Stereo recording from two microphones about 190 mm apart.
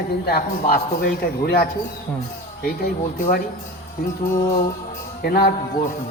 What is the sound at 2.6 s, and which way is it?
Speech, 50° left (ahead or behind).